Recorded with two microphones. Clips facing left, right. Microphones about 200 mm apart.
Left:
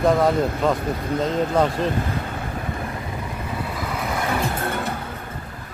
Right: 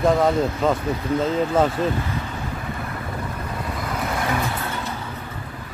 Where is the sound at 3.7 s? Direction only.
5° left (ahead or behind).